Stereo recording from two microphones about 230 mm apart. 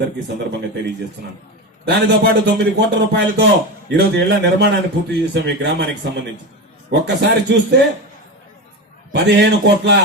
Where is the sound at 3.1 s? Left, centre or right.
Right.